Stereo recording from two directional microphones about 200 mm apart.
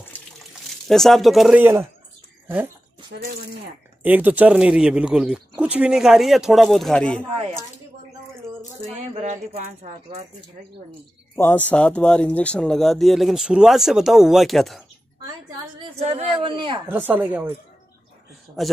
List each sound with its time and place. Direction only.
0.7 s speech: centre (ahead or behind)
4.0 s speech: 10° right (ahead or behind)
9.1 s a sound: 35° right (ahead or behind)
11.3 s speech: 10° left (ahead or behind)
15.8 s speech: 30° right (ahead or behind)
16.8 s speech: 10° right (ahead or behind)